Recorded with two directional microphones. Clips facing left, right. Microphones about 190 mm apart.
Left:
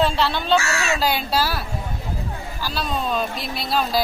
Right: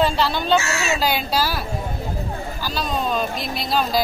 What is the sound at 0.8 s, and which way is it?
Speech, centre (ahead or behind).